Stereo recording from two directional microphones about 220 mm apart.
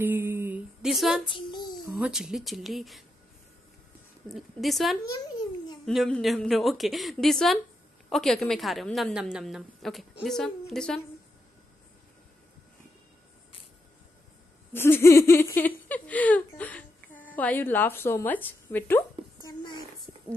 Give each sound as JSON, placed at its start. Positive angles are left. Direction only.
{"t": 0.0, "sound": "a sound", "side_deg": -10}
{"t": 1.2, "sound": "child singing", "side_deg": 20}
{"t": 2.0, "sound": "a woman's voice", "side_deg": -5}
{"t": 4.3, "sound": "a woman's voice", "side_deg": 0}
{"t": 14.7, "sound": "a sound", "side_deg": 10}
{"t": 15.2, "sound": "speech", "side_deg": 10}